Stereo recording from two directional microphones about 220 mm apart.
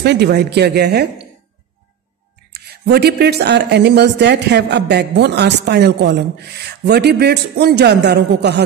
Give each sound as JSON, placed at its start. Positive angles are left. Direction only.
{"t": 0.0, "sound": "a woman's voice", "side_deg": -50}
{"t": 2.5, "sound": "a woman's voice", "side_deg": -45}